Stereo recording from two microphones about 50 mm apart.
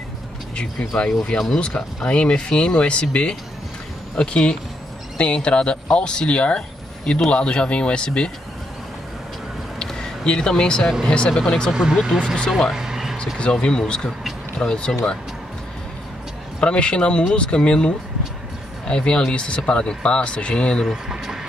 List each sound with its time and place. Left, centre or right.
0.6 s speech: left
9.8 s a sound: centre
11.1 s speech: centre
11.7 s speech: centre
12.4 s speech: centre
12.7 s a sound: centre
13.4 s speech: centre
16.6 s speech: centre
20.8 s speech: centre